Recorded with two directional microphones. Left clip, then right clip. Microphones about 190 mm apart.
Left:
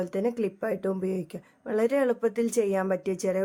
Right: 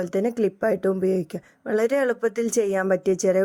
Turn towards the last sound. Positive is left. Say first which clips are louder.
# right 7 dB
turn(degrees=-25)  # may be behind; listen again after turning